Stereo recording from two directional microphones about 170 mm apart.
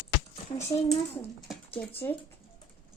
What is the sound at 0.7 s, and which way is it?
Speech, 30° left (ahead or behind).